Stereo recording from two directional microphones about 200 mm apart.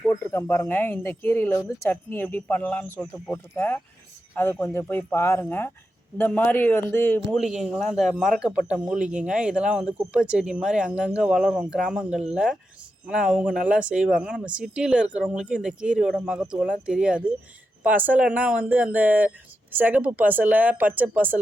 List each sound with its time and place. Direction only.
0.1 s speech: 10° left (ahead or behind)
7.3 s speech: centre (ahead or behind)